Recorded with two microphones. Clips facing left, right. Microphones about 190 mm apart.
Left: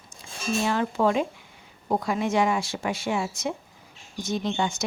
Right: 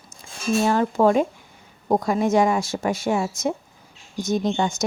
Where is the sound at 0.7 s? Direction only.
45° right (ahead or behind).